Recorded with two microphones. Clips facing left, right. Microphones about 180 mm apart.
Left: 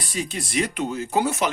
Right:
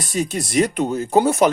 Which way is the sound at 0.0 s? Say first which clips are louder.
Right 6 dB; 45° right (ahead or behind).